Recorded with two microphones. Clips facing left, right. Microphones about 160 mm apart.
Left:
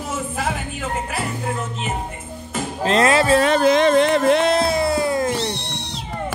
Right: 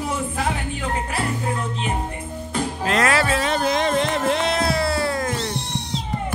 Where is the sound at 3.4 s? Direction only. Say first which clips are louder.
Left 6 dB; 75° left (ahead or behind).